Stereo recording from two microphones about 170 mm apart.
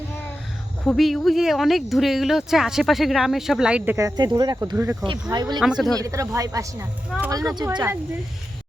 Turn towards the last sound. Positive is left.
turn(degrees=-15)  # may be behind; listen again after turning